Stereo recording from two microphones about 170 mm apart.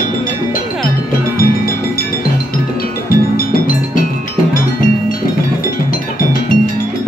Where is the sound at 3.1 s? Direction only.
55° left (ahead or behind).